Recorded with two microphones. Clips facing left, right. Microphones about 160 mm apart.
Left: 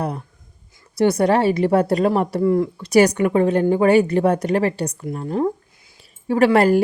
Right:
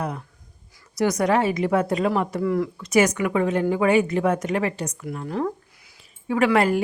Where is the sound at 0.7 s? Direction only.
25° left (ahead or behind).